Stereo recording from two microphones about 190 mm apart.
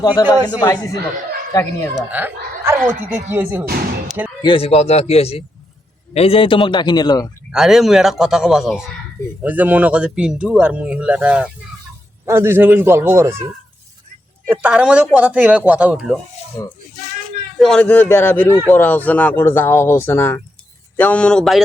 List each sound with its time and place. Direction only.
0.0 s a man's voice: 20° left (ahead or behind)
2.0 s speech: 5° right (ahead or behind)
4.4 s a man's voice: 30° left (ahead or behind)
7.5 s a man's voice: centre (ahead or behind)
14.5 s speech: 5° right (ahead or behind)
16.6 s speech: 15° left (ahead or behind)
17.6 s a man's voice: 5° left (ahead or behind)